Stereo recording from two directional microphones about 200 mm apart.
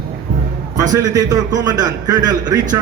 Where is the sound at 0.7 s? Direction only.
15° right (ahead or behind).